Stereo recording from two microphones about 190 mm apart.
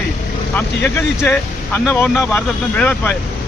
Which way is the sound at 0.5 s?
10° left (ahead or behind).